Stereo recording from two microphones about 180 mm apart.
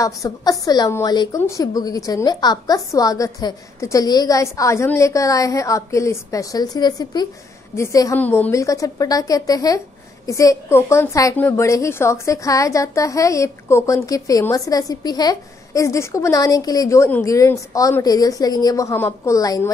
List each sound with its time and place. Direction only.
0.0 s a woman's voice: 20° left (ahead or behind)